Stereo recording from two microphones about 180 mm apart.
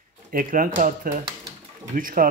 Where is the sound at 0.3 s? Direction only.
50° right (ahead or behind).